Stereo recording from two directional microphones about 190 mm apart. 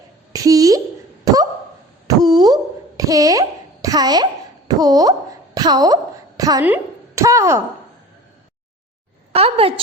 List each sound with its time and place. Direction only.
0.3 s a woman's voice: 20° right (ahead or behind)
2.0 s a sound: 20° right (ahead or behind)
3.0 s a child's voice: 20° right (ahead or behind)
9.3 s a woman's voice: 30° right (ahead or behind)